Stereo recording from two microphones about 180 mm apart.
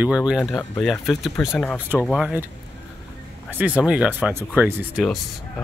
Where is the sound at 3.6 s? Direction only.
5° right (ahead or behind).